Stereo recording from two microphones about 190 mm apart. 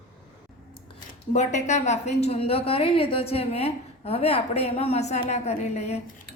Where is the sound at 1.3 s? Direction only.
40° left (ahead or behind).